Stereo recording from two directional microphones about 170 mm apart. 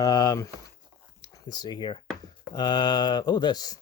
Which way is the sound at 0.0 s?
20° left (ahead or behind).